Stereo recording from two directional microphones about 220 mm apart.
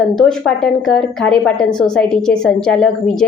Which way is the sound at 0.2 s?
Centre (ahead or behind).